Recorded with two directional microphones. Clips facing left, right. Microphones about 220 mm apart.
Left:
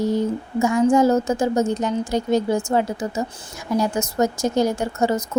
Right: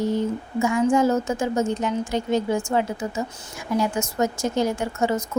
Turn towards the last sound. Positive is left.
turn(degrees=40)  # may be behind; listen again after turning